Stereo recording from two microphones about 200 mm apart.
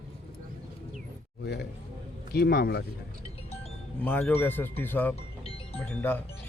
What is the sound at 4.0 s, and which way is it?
Speech, 10° left (ahead or behind).